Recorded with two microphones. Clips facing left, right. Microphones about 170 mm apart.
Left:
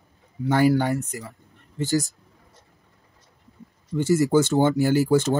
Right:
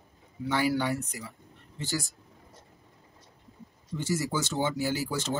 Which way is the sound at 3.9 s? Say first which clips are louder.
Left 11 dB; 55° left (ahead or behind).